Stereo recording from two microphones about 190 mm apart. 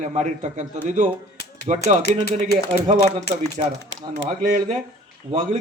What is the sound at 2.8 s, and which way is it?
Speech, 40° right (ahead or behind).